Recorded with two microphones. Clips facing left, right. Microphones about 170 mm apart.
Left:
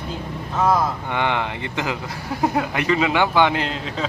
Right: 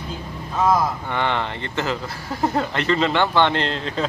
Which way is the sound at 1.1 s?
15° left (ahead or behind).